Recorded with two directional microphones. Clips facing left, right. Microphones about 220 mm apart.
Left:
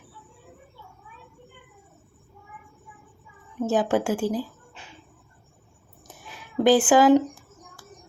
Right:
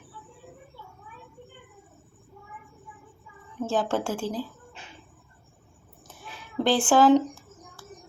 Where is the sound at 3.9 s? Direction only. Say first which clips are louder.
Left 5 dB; 5° left (ahead or behind).